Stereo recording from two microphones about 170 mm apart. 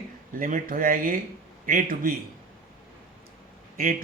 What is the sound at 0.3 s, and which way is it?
Speech, 50° right (ahead or behind).